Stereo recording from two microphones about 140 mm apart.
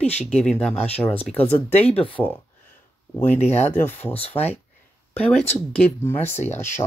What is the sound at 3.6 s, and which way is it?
Speech, 15° left (ahead or behind).